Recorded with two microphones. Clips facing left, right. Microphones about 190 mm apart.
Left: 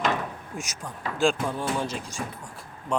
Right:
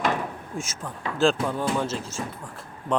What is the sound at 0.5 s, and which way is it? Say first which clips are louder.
Speech: right 4 dB; 30° right (ahead or behind).